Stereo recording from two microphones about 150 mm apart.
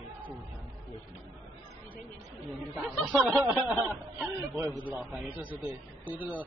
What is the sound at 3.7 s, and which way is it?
A man's voice, 15° right (ahead or behind).